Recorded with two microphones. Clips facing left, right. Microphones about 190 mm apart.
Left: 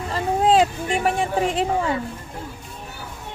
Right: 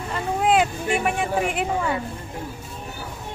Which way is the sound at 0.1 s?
35° left (ahead or behind).